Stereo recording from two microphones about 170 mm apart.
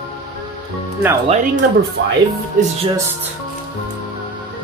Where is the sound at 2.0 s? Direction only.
90° right.